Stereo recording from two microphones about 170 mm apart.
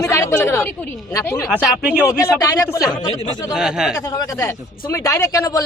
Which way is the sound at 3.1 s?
35° left (ahead or behind).